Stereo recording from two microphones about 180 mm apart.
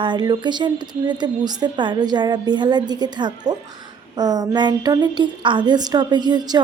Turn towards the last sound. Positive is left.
turn(degrees=-25)  # may be behind; listen again after turning